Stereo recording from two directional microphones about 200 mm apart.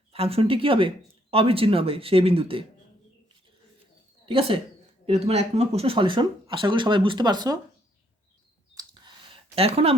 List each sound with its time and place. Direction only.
0.1 s speech: 30° right (ahead or behind)
4.3 s speech: 25° right (ahead or behind)
8.7 s clicking: 20° right (ahead or behind)